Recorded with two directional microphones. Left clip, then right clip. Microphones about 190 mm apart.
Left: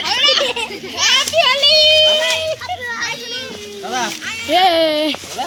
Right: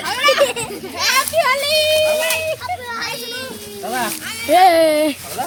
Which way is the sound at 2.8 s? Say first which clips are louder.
Left 2 dB; 45° right (ahead or behind).